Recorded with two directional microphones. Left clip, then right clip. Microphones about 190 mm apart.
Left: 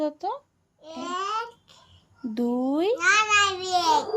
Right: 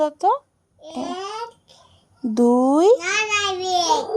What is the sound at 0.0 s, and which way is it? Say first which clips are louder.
Speech: right 10 dB; 30° right (ahead or behind).